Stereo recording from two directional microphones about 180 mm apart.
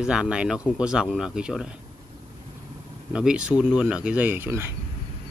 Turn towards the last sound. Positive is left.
turn(degrees=-10)  # may be behind; listen again after turning